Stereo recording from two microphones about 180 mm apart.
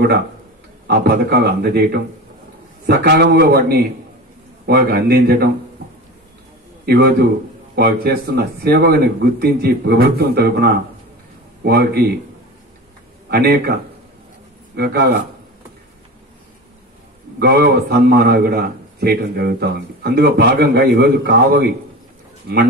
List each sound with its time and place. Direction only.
0.8 s a man's voice: 60° right (ahead or behind)
6.9 s a man's voice: 60° right (ahead or behind)
13.3 s a man's voice: 60° right (ahead or behind)
14.8 s a man's voice: 65° right (ahead or behind)
17.4 s a man's voice: 60° right (ahead or behind)